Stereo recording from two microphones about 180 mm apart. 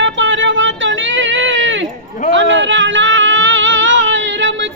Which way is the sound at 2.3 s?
90° right.